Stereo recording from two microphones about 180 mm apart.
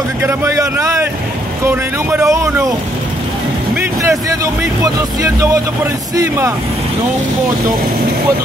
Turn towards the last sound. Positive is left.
turn(degrees=-15)  # may be behind; listen again after turning